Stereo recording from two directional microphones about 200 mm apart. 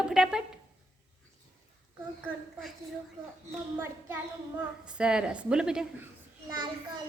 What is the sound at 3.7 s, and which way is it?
A child's voice, 10° right (ahead or behind).